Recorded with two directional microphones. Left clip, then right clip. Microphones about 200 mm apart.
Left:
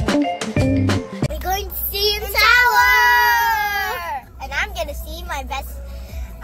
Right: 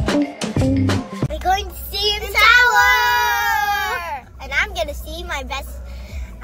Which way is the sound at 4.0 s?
20° right (ahead or behind).